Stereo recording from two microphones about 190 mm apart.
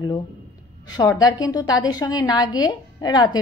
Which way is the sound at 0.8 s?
20° left (ahead or behind).